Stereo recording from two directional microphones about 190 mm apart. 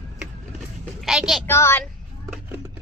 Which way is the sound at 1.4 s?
10° left (ahead or behind).